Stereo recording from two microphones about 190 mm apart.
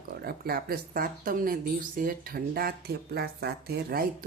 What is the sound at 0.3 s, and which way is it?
Speech, 55° right (ahead or behind).